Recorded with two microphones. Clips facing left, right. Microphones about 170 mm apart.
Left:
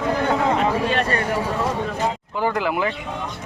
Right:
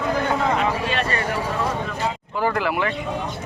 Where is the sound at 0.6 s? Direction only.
45° left (ahead or behind).